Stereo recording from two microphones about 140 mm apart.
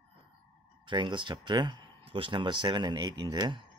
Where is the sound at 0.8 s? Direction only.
35° right (ahead or behind).